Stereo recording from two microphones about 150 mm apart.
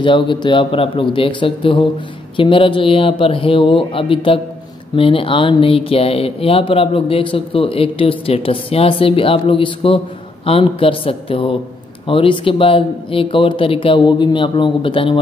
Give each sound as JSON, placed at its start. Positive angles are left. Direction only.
{"t": 0.0, "sound": "speech", "side_deg": 35}